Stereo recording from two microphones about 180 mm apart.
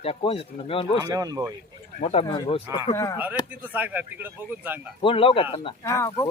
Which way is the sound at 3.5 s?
10° right (ahead or behind).